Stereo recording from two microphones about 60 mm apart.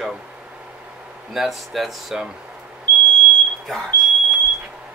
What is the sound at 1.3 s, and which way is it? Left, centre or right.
Speech, centre.